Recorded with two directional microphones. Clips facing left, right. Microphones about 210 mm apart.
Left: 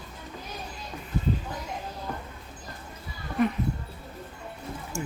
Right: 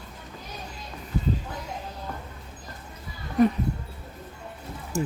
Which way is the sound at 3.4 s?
35° right (ahead or behind).